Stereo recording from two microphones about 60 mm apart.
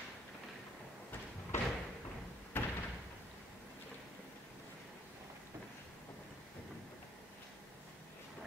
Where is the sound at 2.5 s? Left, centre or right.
Left.